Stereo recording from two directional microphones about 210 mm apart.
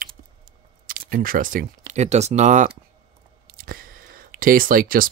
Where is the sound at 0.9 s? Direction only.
40° right (ahead or behind).